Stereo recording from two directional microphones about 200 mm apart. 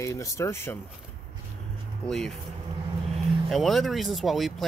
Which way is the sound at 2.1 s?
Centre (ahead or behind).